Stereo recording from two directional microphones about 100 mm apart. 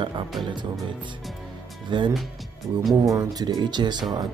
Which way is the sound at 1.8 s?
50° right (ahead or behind).